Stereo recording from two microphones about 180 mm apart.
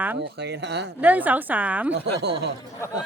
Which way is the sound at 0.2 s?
70° right (ahead or behind).